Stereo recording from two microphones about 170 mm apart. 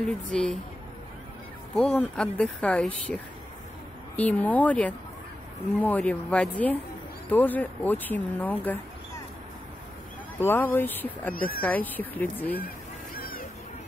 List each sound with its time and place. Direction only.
0.0 s a woman's voice: 5° left (ahead or behind)
1.8 s speech: 5° left (ahead or behind)
4.2 s speech: 10° left (ahead or behind)
10.4 s speech: 10° left (ahead or behind)
11.3 s speech: 55° left (ahead or behind)
11.6 s speech: 10° left (ahead or behind)
13.1 s a sound: 60° left (ahead or behind)